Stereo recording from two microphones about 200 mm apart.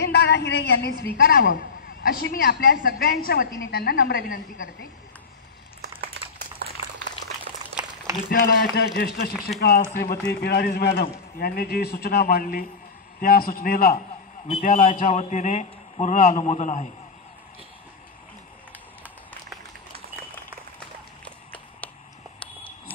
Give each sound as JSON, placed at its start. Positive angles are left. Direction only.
{"t": 0.0, "sound": "a woman's voice", "side_deg": 55}
{"t": 8.3, "sound": "a man's voice", "side_deg": 45}